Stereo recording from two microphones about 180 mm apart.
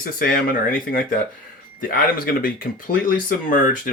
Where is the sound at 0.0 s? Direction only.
50° left (ahead or behind).